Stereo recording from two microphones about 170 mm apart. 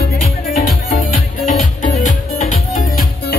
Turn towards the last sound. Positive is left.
turn(degrees=55)  # may be behind; listen again after turning